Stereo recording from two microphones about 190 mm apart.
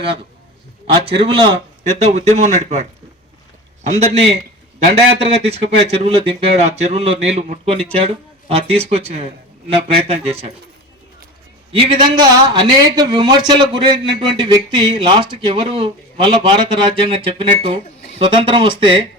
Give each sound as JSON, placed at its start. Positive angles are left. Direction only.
{"t": 0.9, "sound": "speech", "side_deg": -30}
{"t": 3.8, "sound": "speech", "side_deg": -35}
{"t": 11.7, "sound": "a man's voice", "side_deg": -25}